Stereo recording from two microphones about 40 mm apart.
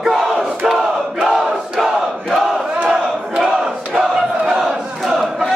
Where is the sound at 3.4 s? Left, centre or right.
Centre.